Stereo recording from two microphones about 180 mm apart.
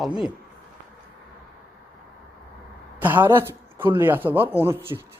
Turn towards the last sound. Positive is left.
turn(degrees=-15)  # may be behind; listen again after turning